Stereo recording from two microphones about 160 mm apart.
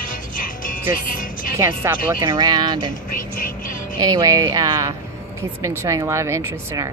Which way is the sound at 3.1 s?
60° left (ahead or behind).